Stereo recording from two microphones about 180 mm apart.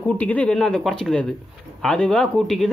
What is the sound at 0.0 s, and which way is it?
Speech, 5° left (ahead or behind).